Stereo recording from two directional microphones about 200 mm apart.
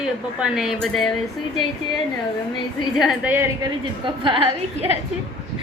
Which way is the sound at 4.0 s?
25° right (ahead or behind).